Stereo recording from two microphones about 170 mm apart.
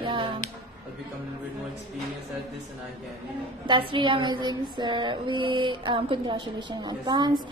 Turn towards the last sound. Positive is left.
turn(degrees=-25)  # may be behind; listen again after turning